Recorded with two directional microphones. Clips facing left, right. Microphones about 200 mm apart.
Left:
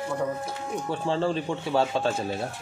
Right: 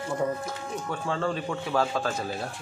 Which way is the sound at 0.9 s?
30° left (ahead or behind).